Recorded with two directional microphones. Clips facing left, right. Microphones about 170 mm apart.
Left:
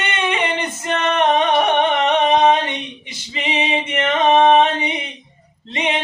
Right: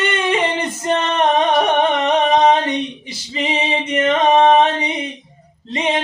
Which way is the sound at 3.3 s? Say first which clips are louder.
Right 1 dB; 40° right (ahead or behind).